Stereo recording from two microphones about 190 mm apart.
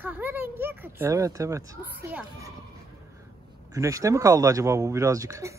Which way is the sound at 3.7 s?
15° right (ahead or behind).